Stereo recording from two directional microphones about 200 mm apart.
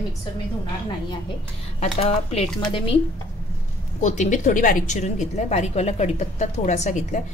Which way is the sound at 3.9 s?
35° left (ahead or behind).